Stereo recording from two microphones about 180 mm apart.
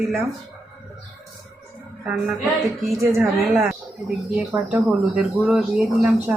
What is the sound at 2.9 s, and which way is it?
Speech, centre (ahead or behind).